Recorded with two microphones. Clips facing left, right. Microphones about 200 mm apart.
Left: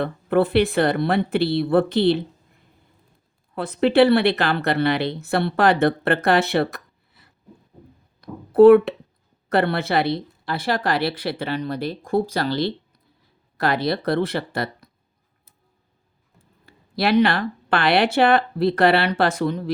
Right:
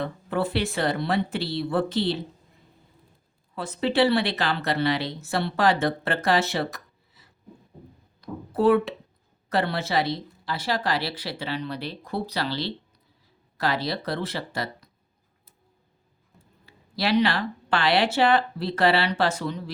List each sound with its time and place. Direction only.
0.0 s speech: 60° left (ahead or behind)
3.5 s speech: 60° left (ahead or behind)
16.6 s speech: 55° left (ahead or behind)